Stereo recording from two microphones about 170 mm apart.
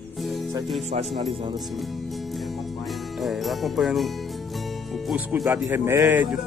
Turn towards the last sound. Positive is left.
turn(degrees=-5)  # may be behind; listen again after turning